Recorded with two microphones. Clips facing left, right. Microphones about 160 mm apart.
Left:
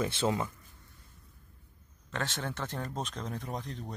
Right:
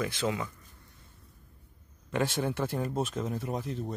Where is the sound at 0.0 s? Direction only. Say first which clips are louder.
Left 1 dB; 25° left (ahead or behind).